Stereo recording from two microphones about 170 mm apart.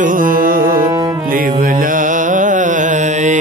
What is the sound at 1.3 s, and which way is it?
Music, 55° right (ahead or behind).